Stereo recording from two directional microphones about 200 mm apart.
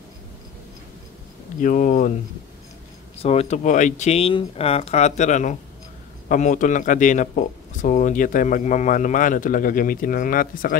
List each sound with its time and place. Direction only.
1.6 s a man's voice: 40° left (ahead or behind)
3.2 s a man's voice: 30° left (ahead or behind)